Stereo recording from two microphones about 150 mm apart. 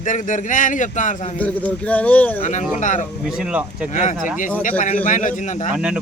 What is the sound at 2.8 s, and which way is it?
Speech, 55° left (ahead or behind).